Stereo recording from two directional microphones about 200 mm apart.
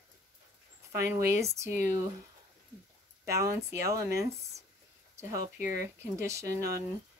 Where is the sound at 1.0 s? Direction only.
15° right (ahead or behind).